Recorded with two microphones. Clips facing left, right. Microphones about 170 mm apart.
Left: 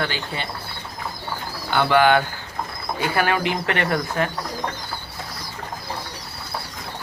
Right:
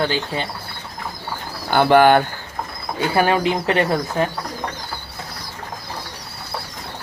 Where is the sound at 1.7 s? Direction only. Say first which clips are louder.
Right 4 dB; 45° right (ahead or behind).